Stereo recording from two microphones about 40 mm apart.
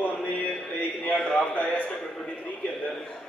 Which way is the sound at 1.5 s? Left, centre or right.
Left.